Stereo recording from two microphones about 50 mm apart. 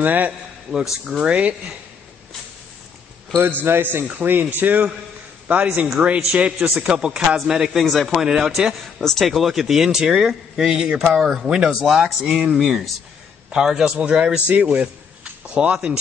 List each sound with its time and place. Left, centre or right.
0.0 s a man's voice: right
0.7 s speech: centre
1.3 s speech: right
3.6 s a man's voice: right; by 7.8 s centre
7.8 s speech: centre
8.2 s speech: centre
12.2 s speech: right
12.5 s speech: centre
13.9 s speech: right
14.5 s a man's voice: right